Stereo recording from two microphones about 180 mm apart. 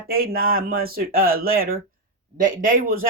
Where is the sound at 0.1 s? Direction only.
55° right (ahead or behind).